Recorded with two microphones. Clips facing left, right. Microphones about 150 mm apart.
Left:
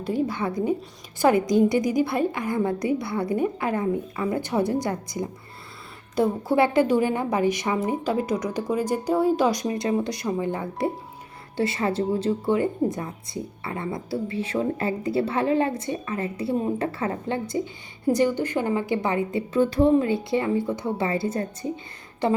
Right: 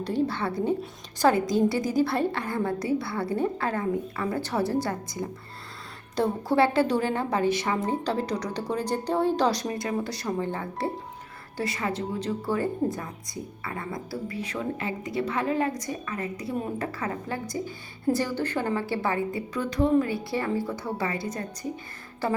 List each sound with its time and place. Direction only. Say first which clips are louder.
0.1 s a woman's voice: left 2 dB; 10° left (ahead or behind)